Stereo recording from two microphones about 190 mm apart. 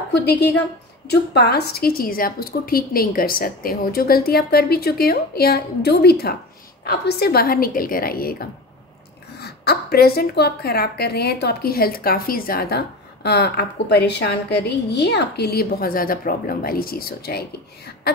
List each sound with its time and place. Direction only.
0.1 s a woman's voice: 60° left (ahead or behind)